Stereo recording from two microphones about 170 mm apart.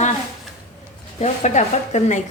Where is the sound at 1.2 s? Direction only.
45° left (ahead or behind).